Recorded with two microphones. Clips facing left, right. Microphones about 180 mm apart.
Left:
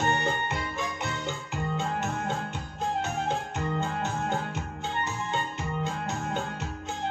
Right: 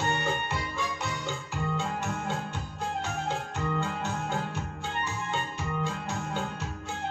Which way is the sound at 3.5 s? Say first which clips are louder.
Left 1 dB; 20° left (ahead or behind).